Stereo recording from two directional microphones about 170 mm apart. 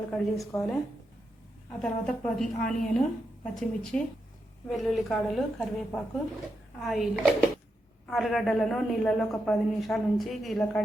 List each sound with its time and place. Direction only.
0.1 s a woman's voice: 5° left (ahead or behind)
1.8 s a woman's voice: 5° left (ahead or behind)